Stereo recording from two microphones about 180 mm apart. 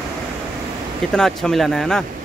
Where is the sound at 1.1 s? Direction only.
5° left (ahead or behind).